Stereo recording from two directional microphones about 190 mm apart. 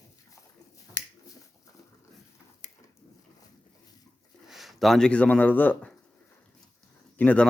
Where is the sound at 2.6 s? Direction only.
40° left (ahead or behind).